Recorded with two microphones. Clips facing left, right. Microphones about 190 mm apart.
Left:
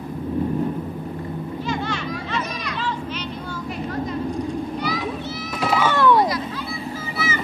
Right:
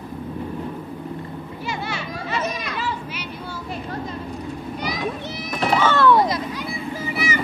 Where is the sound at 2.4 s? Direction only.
25° right (ahead or behind).